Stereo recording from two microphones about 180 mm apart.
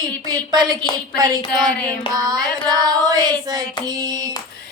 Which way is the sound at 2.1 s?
20° right (ahead or behind).